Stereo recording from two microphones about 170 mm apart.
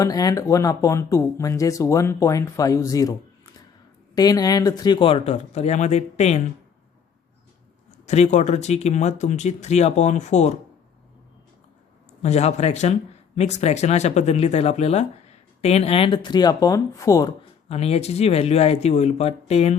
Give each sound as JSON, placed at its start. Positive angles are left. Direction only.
{"t": 0.0, "sound": "speech", "side_deg": 20}
{"t": 7.9, "sound": "speech", "side_deg": 40}
{"t": 12.2, "sound": "speech", "side_deg": 40}
{"t": 17.7, "sound": "speech", "side_deg": 35}